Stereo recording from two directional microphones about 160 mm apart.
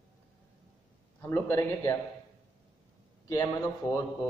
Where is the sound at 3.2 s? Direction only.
20° left (ahead or behind).